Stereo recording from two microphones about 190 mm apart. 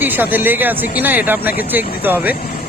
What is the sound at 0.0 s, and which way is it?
Speech, 10° right (ahead or behind).